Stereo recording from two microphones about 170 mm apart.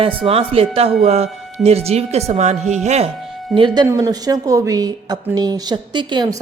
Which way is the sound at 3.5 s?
25° right (ahead or behind).